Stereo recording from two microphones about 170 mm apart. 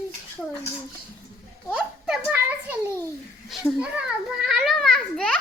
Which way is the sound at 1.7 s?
Centre (ahead or behind).